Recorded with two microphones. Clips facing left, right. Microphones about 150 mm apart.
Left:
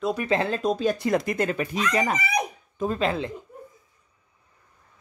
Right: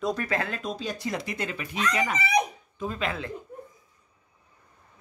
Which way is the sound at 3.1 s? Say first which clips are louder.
Left 5 dB; 25° left (ahead or behind).